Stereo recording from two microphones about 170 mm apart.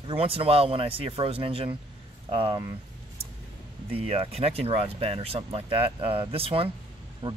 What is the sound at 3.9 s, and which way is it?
Speech, 35° right (ahead or behind).